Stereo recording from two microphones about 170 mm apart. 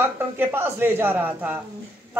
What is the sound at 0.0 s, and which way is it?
Speech, 10° right (ahead or behind).